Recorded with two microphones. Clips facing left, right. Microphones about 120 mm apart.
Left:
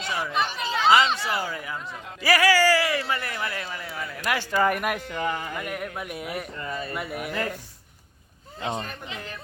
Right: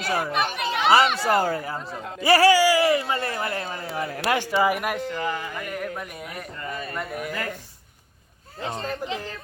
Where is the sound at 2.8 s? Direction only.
25° right (ahead or behind).